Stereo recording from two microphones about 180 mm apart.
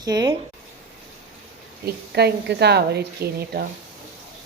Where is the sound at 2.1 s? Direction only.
65° right (ahead or behind).